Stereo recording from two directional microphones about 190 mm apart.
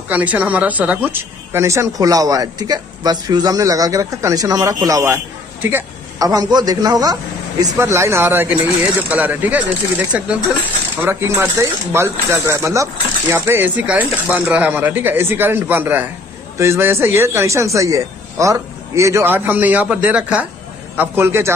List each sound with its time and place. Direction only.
0.1 s speech: 10° right (ahead or behind)